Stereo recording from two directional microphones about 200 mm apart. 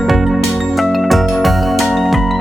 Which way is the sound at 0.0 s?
Centre (ahead or behind).